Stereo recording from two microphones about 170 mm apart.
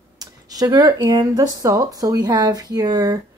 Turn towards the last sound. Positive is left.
turn(degrees=-20)  # may be behind; listen again after turning